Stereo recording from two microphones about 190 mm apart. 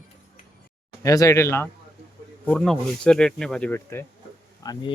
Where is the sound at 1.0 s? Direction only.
15° left (ahead or behind).